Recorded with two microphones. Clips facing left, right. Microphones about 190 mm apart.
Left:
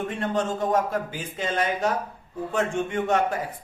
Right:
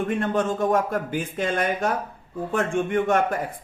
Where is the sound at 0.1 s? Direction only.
55° right (ahead or behind).